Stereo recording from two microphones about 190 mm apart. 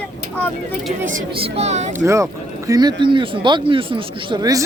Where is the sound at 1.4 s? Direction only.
35° right (ahead or behind).